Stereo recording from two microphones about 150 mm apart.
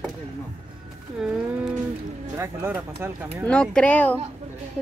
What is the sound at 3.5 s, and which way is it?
Speech, 5° left (ahead or behind).